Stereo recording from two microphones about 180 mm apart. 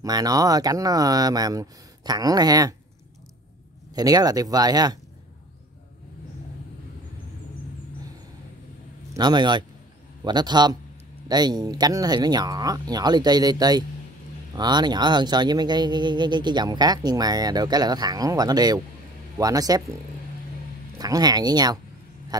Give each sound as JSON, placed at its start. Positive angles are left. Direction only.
{"t": 0.0, "sound": "speech", "side_deg": -20}
{"t": 3.9, "sound": "speech", "side_deg": -20}
{"t": 9.1, "sound": "speech", "side_deg": -25}
{"t": 21.0, "sound": "speech", "side_deg": -20}
{"t": 22.3, "sound": "a sound", "side_deg": -20}